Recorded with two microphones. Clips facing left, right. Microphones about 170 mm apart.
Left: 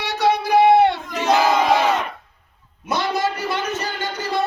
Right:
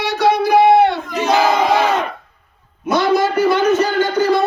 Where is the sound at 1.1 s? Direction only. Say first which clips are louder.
Right 2 dB; 5° right (ahead or behind).